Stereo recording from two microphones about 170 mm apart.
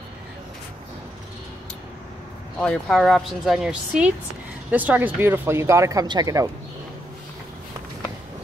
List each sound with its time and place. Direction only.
2.6 s speech: 5° left (ahead or behind); by 6.5 s 20° right (ahead or behind)